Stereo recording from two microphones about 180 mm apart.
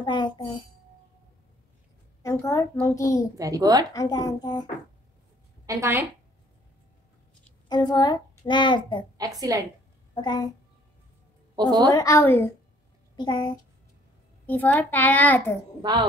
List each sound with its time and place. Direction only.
0.0 s a child's voice: 25° left (ahead or behind)
2.2 s a child's voice: 15° left (ahead or behind)
3.3 s a woman's voice: 20° right (ahead or behind)
3.9 s a child's voice: 20° left (ahead or behind)
5.7 s a woman's voice: 15° right (ahead or behind)
7.6 s a child's voice: 25° left (ahead or behind)
9.2 s a woman's voice: 20° right (ahead or behind)
10.2 s a child's voice: 25° left (ahead or behind)
11.5 s a woman's voice: 20° right (ahead or behind)
11.9 s a child's voice: 20° left (ahead or behind)
13.1 s a child's voice: 25° left (ahead or behind)
14.4 s a child's voice: 10° left (ahead or behind)
15.8 s a woman's voice: 25° right (ahead or behind)